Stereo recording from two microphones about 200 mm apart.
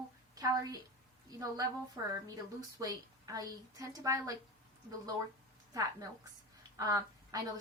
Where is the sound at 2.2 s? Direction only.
15° right (ahead or behind).